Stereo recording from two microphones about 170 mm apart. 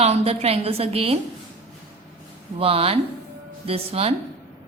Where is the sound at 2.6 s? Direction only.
35° right (ahead or behind).